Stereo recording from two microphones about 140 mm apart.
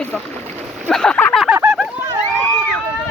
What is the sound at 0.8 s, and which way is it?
Speech, 5° left (ahead or behind).